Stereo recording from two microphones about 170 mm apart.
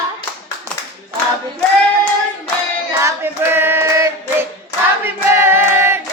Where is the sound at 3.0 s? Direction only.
15° right (ahead or behind).